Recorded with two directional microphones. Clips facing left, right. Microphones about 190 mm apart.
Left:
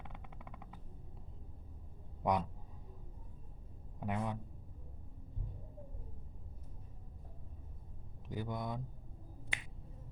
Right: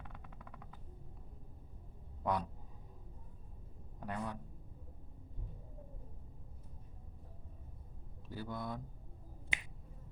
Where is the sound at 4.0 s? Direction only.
20° left (ahead or behind).